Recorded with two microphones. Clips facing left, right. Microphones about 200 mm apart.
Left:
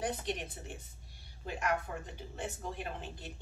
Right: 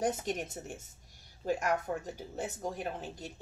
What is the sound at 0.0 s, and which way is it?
A woman's voice, 45° right (ahead or behind).